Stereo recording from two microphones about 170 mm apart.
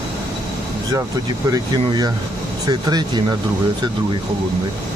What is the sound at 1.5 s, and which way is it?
Speech, 25° right (ahead or behind).